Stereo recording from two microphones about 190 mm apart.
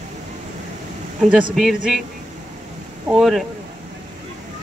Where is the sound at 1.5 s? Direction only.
Centre (ahead or behind).